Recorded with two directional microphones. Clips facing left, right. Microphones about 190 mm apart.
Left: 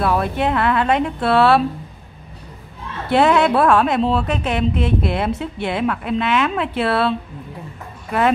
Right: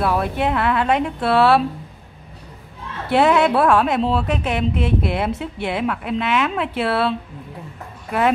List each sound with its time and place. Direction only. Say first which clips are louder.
0.0 s a woman's voice: left 1 dB; 5° right (ahead or behind)
3.1 s a woman's voice: left 1 dB; 5° right (ahead or behind)